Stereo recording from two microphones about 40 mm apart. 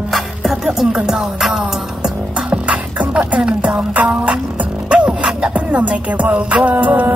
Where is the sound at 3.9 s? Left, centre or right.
Right.